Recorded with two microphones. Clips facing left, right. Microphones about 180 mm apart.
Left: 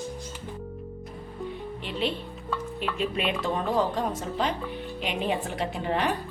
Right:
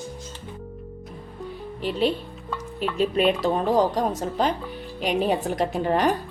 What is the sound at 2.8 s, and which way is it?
A woman's voice, 40° right (ahead or behind).